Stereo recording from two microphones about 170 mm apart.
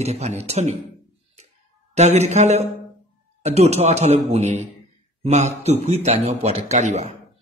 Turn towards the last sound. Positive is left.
turn(degrees=-40)  # may be behind; listen again after turning